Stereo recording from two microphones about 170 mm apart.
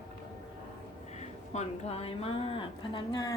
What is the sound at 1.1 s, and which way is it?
Speech, 40° left (ahead or behind).